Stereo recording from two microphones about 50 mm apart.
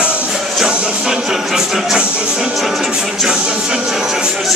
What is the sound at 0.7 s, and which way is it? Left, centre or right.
Music, right.